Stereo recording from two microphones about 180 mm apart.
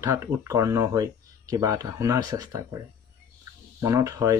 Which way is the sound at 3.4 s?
15° right (ahead or behind).